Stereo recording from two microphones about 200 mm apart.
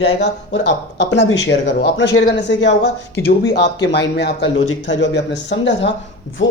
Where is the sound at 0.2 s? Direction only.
60° left (ahead or behind).